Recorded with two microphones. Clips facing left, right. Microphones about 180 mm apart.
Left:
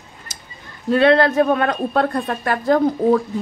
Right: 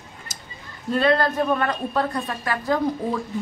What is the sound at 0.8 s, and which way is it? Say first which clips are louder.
A woman's voice: left 6 dB; 70° left (ahead or behind).